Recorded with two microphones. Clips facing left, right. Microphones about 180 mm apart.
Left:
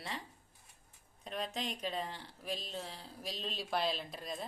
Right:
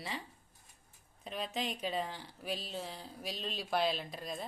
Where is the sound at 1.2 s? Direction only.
5° right (ahead or behind).